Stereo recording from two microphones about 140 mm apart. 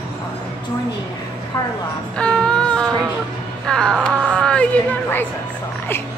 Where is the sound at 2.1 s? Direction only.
5° left (ahead or behind).